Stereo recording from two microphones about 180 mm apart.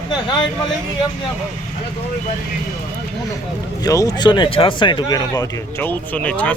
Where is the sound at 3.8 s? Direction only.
20° left (ahead or behind).